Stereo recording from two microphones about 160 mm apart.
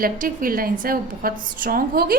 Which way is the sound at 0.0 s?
60° right (ahead or behind).